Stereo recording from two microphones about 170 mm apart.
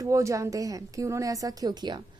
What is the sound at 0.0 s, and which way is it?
A woman's voice, 20° right (ahead or behind).